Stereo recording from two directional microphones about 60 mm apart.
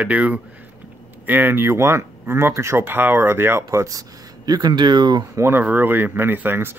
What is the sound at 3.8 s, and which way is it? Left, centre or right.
Speech, right.